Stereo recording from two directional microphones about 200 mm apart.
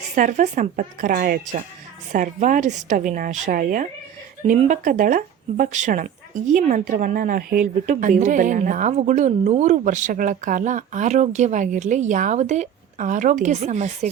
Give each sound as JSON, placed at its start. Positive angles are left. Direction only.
{"t": 0.2, "sound": "a woman's voice", "side_deg": -40}